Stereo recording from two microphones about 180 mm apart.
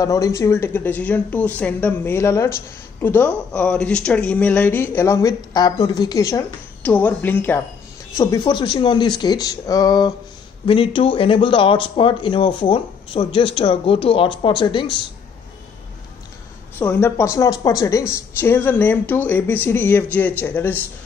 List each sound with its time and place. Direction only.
0.0 s speech: 20° left (ahead or behind)
8.2 s speech: 25° left (ahead or behind)
16.7 s speech: 10° left (ahead or behind)